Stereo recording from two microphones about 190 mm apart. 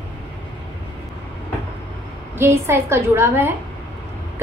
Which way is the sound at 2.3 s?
15° right (ahead or behind).